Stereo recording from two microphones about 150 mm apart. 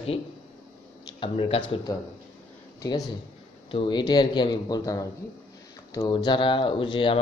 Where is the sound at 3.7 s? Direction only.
35° left (ahead or behind).